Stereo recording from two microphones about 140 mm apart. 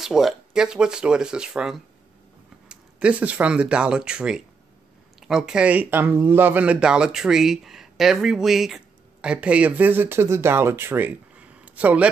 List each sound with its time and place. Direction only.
0.0 s speech: 5° right (ahead or behind)